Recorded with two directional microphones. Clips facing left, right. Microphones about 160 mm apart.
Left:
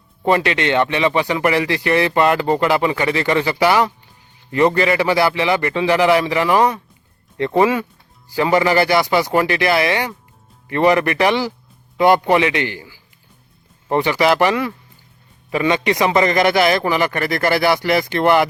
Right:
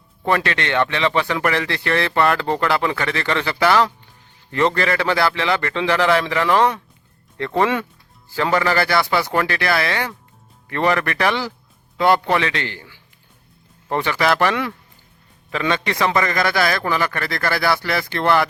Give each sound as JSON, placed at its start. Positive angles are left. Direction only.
{"t": 0.3, "sound": "speech", "side_deg": 15}
{"t": 14.5, "sound": "speech", "side_deg": 0}
{"t": 15.5, "sound": "speech", "side_deg": 15}